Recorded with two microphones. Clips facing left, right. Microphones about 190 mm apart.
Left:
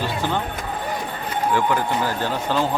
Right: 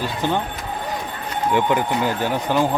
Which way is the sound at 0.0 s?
15° right (ahead or behind).